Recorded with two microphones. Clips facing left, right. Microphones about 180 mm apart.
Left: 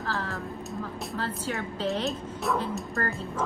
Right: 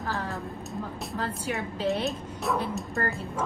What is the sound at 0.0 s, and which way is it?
Music, 20° right (ahead or behind).